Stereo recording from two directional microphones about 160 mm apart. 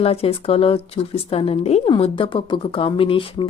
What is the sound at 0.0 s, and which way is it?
Speech, 40° left (ahead or behind).